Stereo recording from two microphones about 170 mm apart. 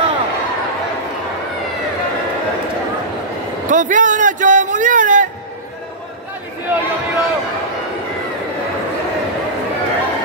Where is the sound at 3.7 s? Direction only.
50° right (ahead or behind).